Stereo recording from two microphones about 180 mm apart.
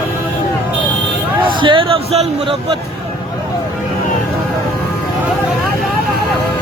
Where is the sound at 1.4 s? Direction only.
30° right (ahead or behind).